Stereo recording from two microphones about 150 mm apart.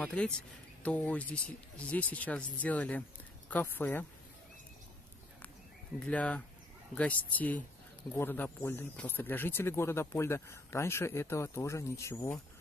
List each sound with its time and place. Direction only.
0.0 s speech: 10° left (ahead or behind)
6.0 s speech: 10° left (ahead or behind)